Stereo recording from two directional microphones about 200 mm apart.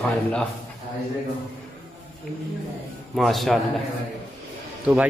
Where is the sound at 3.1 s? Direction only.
Centre (ahead or behind).